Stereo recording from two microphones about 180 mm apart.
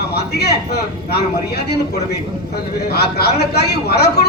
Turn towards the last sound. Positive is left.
turn(degrees=65)  # may be behind; listen again after turning